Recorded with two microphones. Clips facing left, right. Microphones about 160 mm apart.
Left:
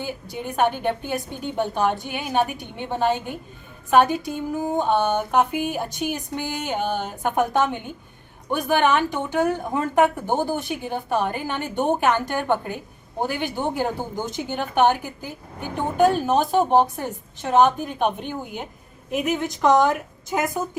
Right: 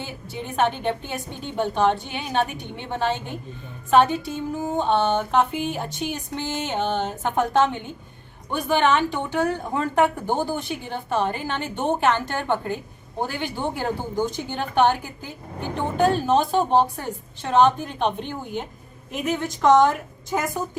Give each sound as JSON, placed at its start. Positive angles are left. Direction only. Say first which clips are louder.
{"t": 0.0, "sound": "speech", "louder": "left 3 dB", "side_deg": 10}